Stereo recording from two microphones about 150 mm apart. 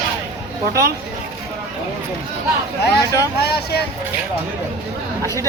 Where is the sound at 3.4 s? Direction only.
90° left.